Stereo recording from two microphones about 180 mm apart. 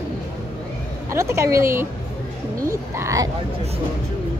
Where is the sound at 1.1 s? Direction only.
15° right (ahead or behind).